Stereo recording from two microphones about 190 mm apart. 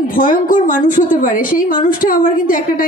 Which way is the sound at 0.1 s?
45° left (ahead or behind).